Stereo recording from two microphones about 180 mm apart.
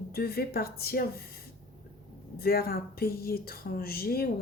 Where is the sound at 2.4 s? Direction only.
55° left (ahead or behind).